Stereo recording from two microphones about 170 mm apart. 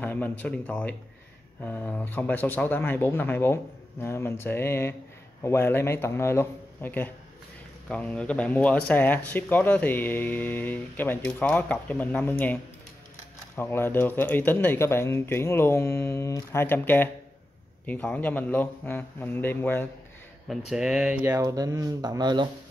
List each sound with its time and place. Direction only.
0.0 s speech: 10° left (ahead or behind)
13.6 s speech: 15° left (ahead or behind)
20.7 s speech: 5° right (ahead or behind); by 22.5 s 25° right (ahead or behind)